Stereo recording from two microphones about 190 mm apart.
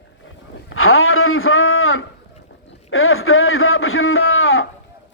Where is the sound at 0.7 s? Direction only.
90° left.